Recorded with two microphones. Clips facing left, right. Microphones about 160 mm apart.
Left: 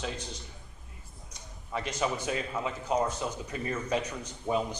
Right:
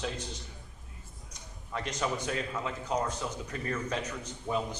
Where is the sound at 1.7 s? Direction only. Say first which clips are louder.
Left 2 dB; 5° left (ahead or behind).